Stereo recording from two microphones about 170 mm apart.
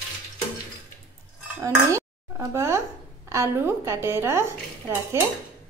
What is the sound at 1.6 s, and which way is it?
Dishes, 15° right (ahead or behind).